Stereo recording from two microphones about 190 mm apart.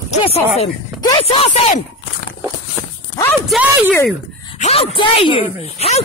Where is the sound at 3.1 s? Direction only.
15° left (ahead or behind).